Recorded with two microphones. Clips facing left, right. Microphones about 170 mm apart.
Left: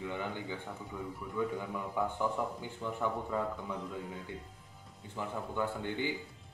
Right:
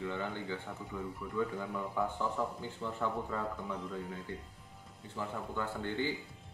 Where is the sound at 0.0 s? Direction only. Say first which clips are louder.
Even; 15° left (ahead or behind).